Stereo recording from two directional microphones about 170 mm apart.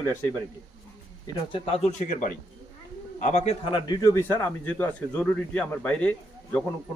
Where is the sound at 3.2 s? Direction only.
40° left (ahead or behind); by 4.2 s 25° left (ahead or behind).